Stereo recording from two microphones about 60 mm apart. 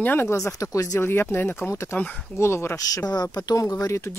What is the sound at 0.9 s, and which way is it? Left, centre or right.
Speech, left.